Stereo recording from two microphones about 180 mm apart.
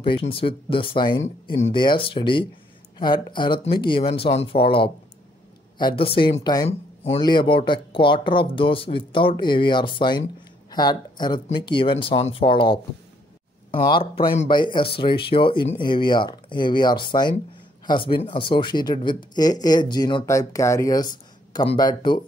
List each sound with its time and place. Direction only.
0.3 s speech: 30° left (ahead or behind)